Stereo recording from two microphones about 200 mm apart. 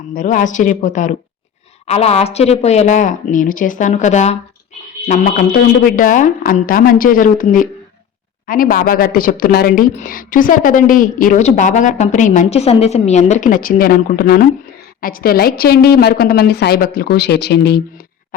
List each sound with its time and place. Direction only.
0.1 s speech: 40° left (ahead or behind)